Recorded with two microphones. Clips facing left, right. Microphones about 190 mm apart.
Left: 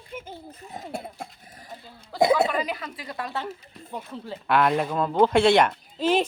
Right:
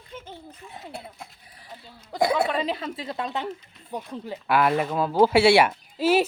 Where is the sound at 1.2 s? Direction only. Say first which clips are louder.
Left 5 dB; 45° left (ahead or behind).